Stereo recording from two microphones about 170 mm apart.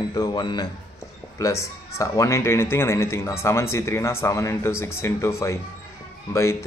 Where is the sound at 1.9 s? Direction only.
15° left (ahead or behind).